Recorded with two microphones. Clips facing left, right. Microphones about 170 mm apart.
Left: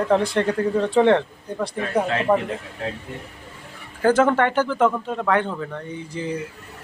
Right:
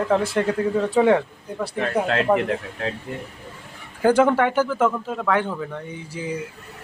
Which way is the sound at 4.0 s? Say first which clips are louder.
Even; 10° right (ahead or behind).